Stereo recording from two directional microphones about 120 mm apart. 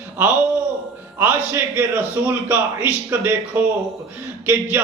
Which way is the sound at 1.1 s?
20° right (ahead or behind).